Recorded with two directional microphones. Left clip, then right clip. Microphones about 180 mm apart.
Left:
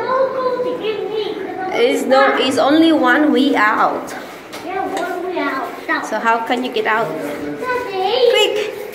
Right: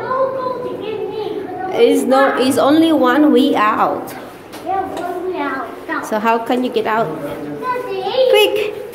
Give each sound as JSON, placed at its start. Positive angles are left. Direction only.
{"t": 1.7, "sound": "a woman's voice", "side_deg": -35}
{"t": 6.1, "sound": "a woman's voice", "side_deg": -45}
{"t": 8.3, "sound": "a sound", "side_deg": -40}